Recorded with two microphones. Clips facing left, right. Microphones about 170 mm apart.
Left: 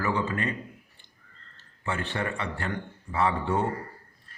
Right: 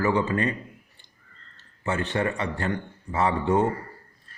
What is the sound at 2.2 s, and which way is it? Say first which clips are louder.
A man's voice: right 5 dB; 30° right (ahead or behind).